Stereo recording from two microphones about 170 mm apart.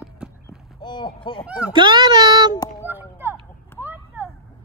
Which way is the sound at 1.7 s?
25° right (ahead or behind).